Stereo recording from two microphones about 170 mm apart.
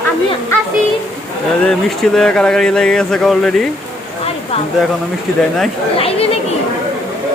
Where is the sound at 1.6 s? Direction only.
5° left (ahead or behind).